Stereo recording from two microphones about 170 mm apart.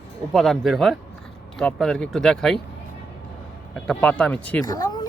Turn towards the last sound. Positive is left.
turn(degrees=25)  # may be behind; listen again after turning